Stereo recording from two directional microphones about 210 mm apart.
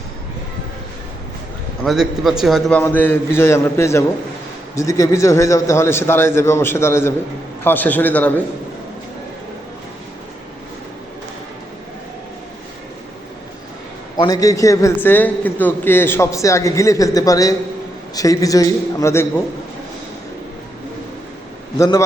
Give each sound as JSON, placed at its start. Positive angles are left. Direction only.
{"t": 1.8, "sound": "a man's voice", "side_deg": 0}
{"t": 14.2, "sound": "a man's voice", "side_deg": 15}
{"t": 21.8, "sound": "a man's voice", "side_deg": 15}